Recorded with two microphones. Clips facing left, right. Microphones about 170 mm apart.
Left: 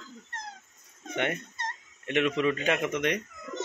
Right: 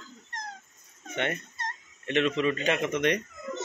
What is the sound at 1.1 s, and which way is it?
Fowl, 15° left (ahead or behind).